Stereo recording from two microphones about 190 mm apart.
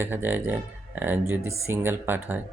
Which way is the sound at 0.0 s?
10° right (ahead or behind).